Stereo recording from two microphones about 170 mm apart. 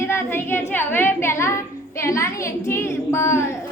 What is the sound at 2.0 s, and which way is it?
A woman's voice, 15° left (ahead or behind).